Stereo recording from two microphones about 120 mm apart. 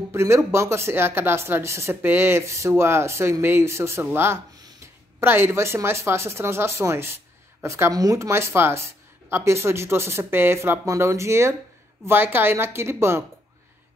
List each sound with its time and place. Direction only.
0.1 s speech: 20° right (ahead or behind)